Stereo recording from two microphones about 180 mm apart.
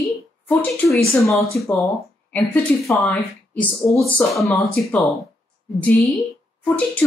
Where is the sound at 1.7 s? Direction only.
15° left (ahead or behind).